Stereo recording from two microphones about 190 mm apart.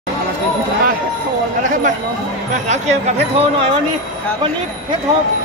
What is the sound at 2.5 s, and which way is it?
Speech, 35° right (ahead or behind).